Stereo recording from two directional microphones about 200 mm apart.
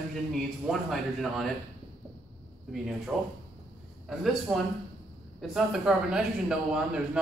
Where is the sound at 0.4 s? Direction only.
Centre (ahead or behind).